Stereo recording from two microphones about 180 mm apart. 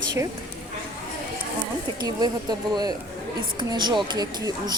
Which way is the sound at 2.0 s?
20° right (ahead or behind).